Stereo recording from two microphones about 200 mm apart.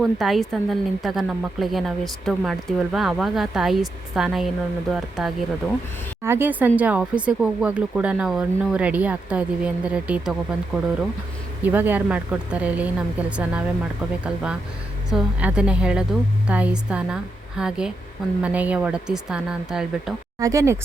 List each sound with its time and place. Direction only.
0.0 s a woman's voice: centre (ahead or behind)
20.4 s speech: 15° right (ahead or behind)